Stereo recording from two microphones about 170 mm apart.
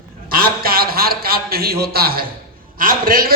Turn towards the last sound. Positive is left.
turn(degrees=-60)  # may be behind; listen again after turning